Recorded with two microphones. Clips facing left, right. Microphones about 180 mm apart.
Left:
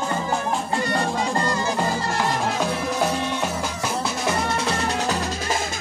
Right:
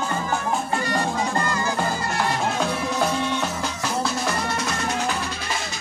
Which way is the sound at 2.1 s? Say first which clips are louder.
Even; 5° left (ahead or behind).